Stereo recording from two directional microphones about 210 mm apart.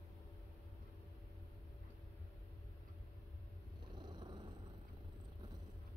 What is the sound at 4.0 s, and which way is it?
Purr, 20° right (ahead or behind).